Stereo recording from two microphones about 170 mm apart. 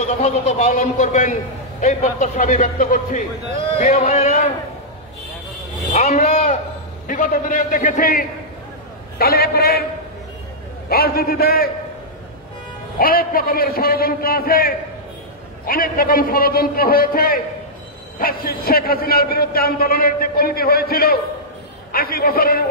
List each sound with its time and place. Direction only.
0.0 s a man's voice: 40° left (ahead or behind)
5.9 s a sound: 45° left (ahead or behind)
7.1 s a man's voice: 50° left (ahead or behind)
10.9 s a man's voice: 65° left (ahead or behind)
13.0 s a man's voice: 60° left (ahead or behind)